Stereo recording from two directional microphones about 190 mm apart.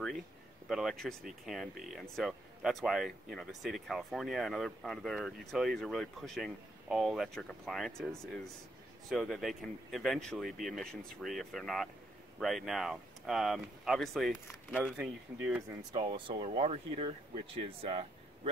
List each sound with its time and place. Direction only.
0.7 s speech: centre (ahead or behind)
9.1 s speech: centre (ahead or behind)
15.9 s speech: 25° right (ahead or behind)